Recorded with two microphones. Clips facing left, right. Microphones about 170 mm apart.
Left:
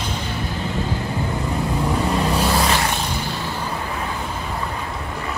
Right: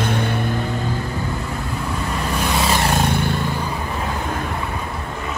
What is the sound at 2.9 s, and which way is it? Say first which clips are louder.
Vehicle: right 6 dB; 60° right (ahead or behind).